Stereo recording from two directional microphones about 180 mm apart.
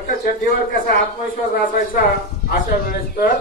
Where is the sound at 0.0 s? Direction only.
45° left (ahead or behind).